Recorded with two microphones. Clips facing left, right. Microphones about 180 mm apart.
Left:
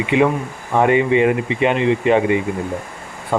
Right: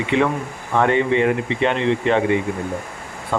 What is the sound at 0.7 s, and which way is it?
Speech, 15° left (ahead or behind).